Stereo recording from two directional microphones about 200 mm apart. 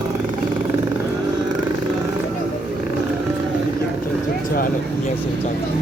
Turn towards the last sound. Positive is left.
turn(degrees=45)  # may be behind; listen again after turning